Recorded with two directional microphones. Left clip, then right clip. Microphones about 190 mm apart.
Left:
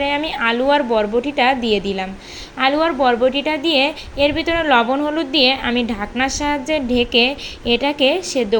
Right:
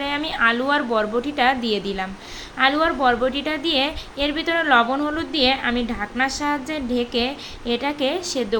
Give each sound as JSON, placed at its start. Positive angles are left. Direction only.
{"t": 0.0, "sound": "a woman's voice", "side_deg": 5}